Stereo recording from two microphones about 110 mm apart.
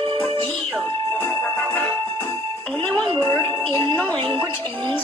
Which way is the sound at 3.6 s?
50° right (ahead or behind).